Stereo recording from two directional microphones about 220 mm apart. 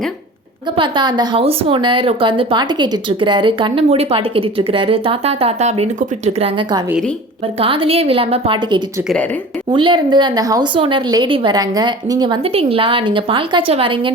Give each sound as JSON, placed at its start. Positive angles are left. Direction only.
{"t": 0.8, "sound": "a woman's voice", "side_deg": -20}
{"t": 9.0, "sound": "speech", "side_deg": 5}
{"t": 9.6, "sound": "a woman's voice", "side_deg": -20}